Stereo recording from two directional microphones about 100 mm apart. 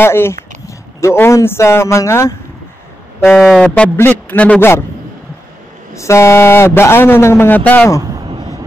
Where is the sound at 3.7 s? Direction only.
20° left (ahead or behind).